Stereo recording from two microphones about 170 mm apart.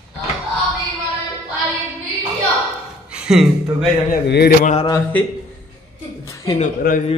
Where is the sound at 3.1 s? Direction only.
5° right (ahead or behind).